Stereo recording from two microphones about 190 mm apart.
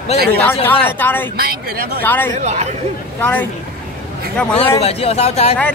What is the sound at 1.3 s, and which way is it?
Speech, 55° right (ahead or behind).